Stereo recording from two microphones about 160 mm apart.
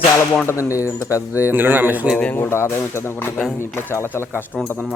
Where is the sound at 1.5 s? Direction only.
10° right (ahead or behind).